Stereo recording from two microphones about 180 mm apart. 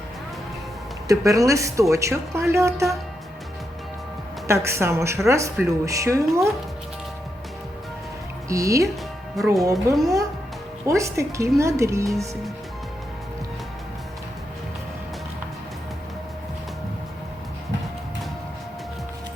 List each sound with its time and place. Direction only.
1.0 s speech: 20° right (ahead or behind)
4.4 s speech: 15° right (ahead or behind)
8.4 s speech: 20° right (ahead or behind)
9.7 s speech: centre (ahead or behind)
10.8 s speech: 15° right (ahead or behind)